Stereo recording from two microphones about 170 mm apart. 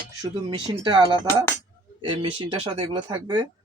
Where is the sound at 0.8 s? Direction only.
25° right (ahead or behind).